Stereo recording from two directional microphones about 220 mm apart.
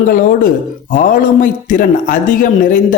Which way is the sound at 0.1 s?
40° left (ahead or behind).